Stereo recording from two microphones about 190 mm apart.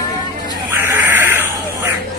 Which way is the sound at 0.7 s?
10° right (ahead or behind).